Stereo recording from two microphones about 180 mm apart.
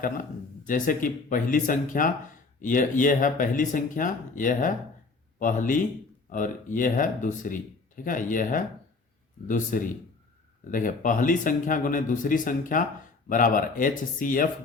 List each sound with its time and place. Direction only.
0.7 s speech: 50° left (ahead or behind)
9.7 s speech: 50° left (ahead or behind)